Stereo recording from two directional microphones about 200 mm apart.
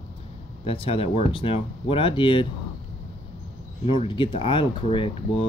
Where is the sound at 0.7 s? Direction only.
30° left (ahead or behind).